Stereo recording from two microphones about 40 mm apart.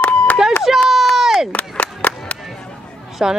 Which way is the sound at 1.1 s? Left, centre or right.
Centre.